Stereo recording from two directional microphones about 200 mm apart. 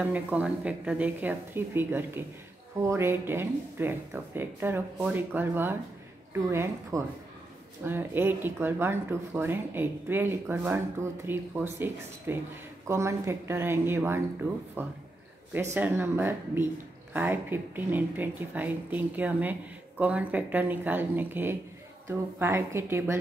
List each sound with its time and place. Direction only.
0.0 s speech: 5° right (ahead or behind)